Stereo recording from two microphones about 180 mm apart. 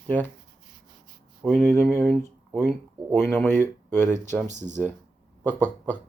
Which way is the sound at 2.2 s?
10° left (ahead or behind).